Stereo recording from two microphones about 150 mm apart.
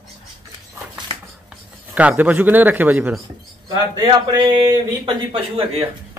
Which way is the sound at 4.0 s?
30° right (ahead or behind).